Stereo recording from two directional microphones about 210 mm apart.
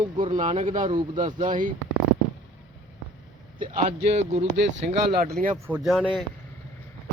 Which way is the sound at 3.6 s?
40° right (ahead or behind).